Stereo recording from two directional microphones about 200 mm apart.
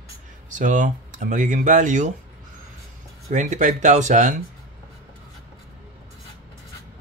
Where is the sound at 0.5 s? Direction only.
40° right (ahead or behind).